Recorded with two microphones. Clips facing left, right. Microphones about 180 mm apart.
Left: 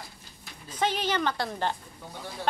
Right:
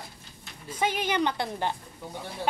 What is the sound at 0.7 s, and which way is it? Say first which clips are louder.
A woman's voice: even; 10° right (ahead or behind).